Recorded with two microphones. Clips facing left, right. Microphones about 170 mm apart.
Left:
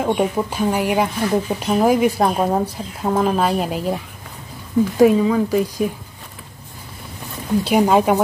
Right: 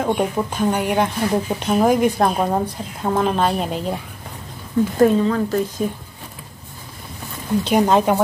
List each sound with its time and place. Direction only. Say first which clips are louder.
0.0 s speech: left 1 dB; 5° left (ahead or behind)
7.6 s speech: left 1 dB; 10° left (ahead or behind)